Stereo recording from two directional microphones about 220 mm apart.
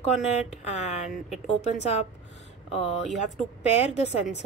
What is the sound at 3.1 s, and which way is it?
Speech, 30° left (ahead or behind).